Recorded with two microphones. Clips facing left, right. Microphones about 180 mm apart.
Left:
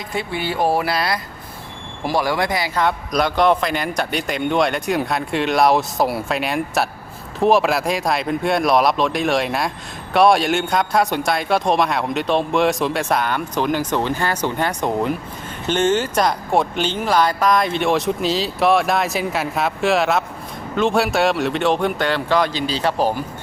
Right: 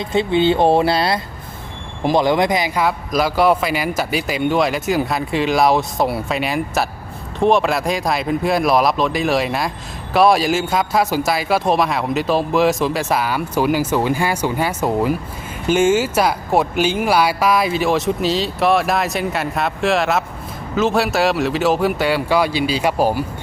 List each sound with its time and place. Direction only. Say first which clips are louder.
0.0 s speech: right 9 dB; 25° right (ahead or behind)
2.8 s speech: right 1 dB; 5° right (ahead or behind)